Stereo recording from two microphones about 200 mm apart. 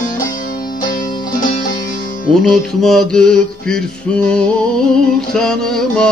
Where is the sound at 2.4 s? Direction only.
Centre (ahead or behind).